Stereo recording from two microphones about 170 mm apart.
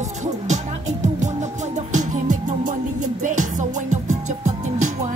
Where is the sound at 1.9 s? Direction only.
45° right (ahead or behind).